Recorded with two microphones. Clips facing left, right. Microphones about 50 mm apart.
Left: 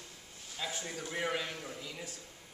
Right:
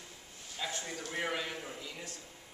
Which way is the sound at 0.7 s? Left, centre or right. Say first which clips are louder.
Even; centre.